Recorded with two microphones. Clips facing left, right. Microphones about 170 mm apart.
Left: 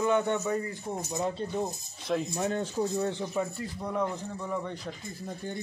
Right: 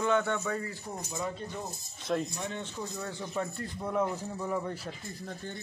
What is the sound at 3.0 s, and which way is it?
Speech, 25° left (ahead or behind).